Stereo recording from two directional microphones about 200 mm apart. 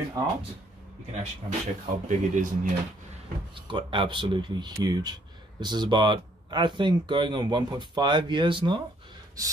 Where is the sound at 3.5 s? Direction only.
25° right (ahead or behind).